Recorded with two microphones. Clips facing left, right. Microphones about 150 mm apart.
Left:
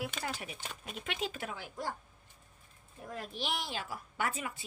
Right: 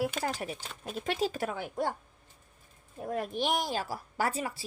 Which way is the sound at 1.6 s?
60° right (ahead or behind).